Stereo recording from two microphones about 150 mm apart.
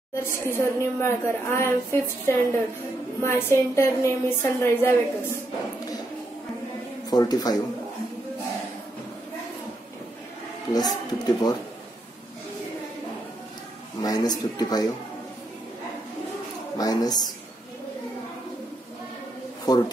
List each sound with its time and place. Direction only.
0.1 s a woman's voice: 20° left (ahead or behind)
7.1 s speech: 25° left (ahead or behind)
10.7 s speech: 25° left (ahead or behind)
14.0 s speech: 25° left (ahead or behind)
16.7 s speech: 25° left (ahead or behind)
19.7 s speech: 25° left (ahead or behind)